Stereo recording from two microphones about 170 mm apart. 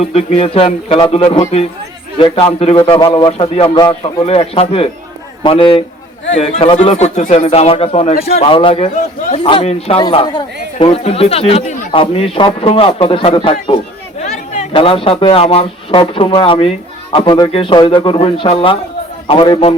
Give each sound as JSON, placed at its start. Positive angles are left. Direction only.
{"t": 0.0, "sound": "a man's voice", "side_deg": 40}
{"t": 8.1, "sound": "a man's voice", "side_deg": 65}
{"t": 8.4, "sound": "speech", "side_deg": 30}